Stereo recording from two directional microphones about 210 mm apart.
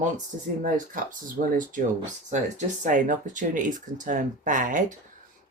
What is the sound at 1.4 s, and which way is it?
Speech, 40° right (ahead or behind).